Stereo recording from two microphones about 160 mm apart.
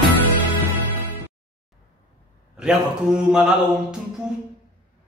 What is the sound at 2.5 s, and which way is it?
A man's voice, 5° right (ahead or behind).